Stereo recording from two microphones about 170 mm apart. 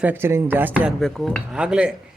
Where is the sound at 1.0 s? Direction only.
5° left (ahead or behind).